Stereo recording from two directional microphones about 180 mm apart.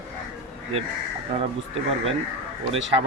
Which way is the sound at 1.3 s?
35° right (ahead or behind).